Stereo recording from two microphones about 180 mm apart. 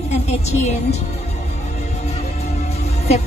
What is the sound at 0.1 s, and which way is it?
Music, 35° left (ahead or behind).